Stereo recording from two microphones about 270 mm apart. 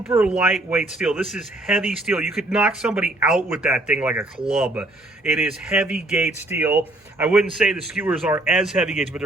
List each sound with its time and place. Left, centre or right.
0.0 s speech: centre